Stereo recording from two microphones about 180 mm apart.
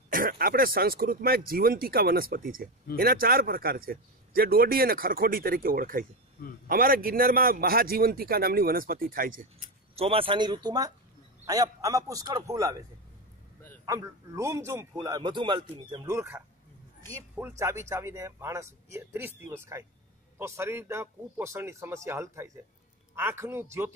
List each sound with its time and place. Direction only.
0.1 s a man's voice: 50° right (ahead or behind)
9.9 s a man's voice: 30° right (ahead or behind)
13.8 s a man's voice: 15° right (ahead or behind)
16.1 s speech: 10° right (ahead or behind)